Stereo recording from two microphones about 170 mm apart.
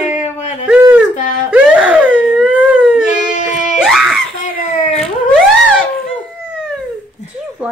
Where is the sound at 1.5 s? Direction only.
10° right (ahead or behind).